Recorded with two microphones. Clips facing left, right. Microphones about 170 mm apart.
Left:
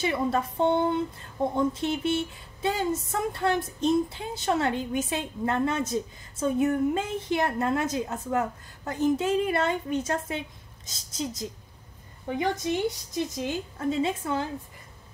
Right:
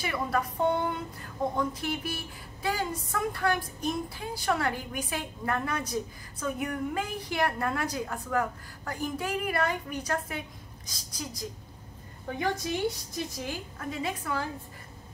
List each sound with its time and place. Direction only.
0.0 s a woman's voice: 25° left (ahead or behind)